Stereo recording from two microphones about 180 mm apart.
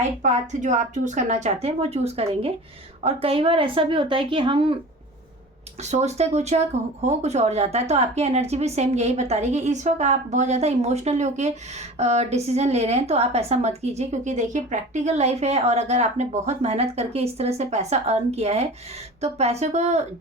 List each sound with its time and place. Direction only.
0.2 s speech: 40° right (ahead or behind)
5.8 s speech: 40° right (ahead or behind)